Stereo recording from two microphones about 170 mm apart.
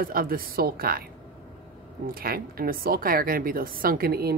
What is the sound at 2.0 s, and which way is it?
Speech, 60° right (ahead or behind).